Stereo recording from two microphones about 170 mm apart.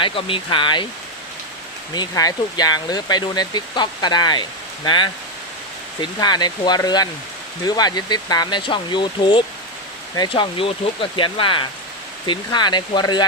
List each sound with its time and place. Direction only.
0.0 s speech: 30° left (ahead or behind)
1.9 s speech: 25° left (ahead or behind)